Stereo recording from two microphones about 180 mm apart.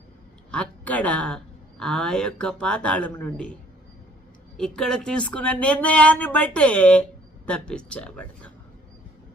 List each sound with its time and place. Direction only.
0.5 s speech: 5° left (ahead or behind)